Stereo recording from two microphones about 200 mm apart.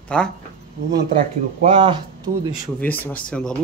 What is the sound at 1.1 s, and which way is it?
Speech, 30° right (ahead or behind).